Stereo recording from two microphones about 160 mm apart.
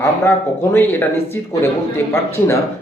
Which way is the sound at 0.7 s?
15° left (ahead or behind).